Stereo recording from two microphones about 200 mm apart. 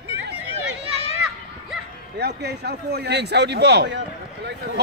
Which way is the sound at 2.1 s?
55° right (ahead or behind).